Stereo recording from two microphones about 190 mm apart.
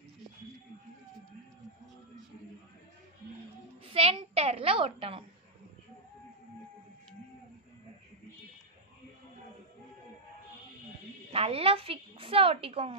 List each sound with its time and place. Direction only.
3.9 s a woman's voice: 30° right (ahead or behind)
11.3 s a woman's voice: 30° right (ahead or behind)